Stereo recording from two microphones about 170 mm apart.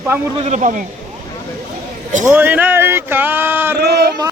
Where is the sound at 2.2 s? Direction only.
10° right (ahead or behind).